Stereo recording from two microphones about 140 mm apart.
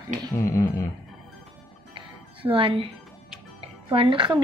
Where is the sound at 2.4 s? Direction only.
40° right (ahead or behind).